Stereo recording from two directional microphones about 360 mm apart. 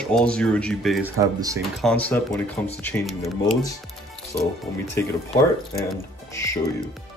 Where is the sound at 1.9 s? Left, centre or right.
Centre.